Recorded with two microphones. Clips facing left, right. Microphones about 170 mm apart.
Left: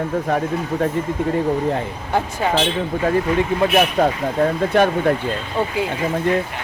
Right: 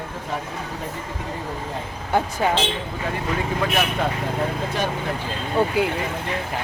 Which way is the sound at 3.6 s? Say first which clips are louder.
Left 7 dB; 35° left (ahead or behind).